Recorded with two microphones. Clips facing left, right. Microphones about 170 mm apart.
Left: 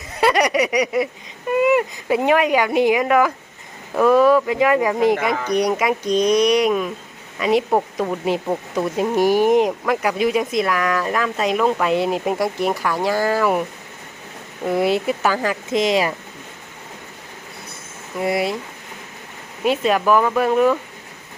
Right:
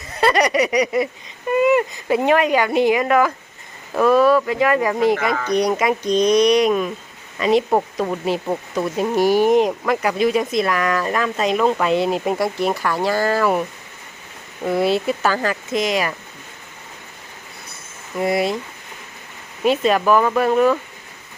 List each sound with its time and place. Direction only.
0.2 s speech: 10° left (ahead or behind)
8.7 s speech: 15° left (ahead or behind)
14.8 s speech: 15° left (ahead or behind)
18.2 s speech: 10° left (ahead or behind)
19.6 s speech: 10° left (ahead or behind)